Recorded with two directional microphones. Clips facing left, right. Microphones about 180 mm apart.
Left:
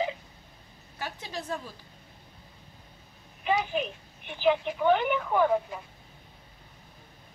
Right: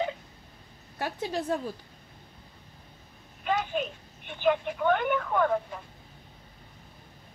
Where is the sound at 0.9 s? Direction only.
35° right (ahead or behind).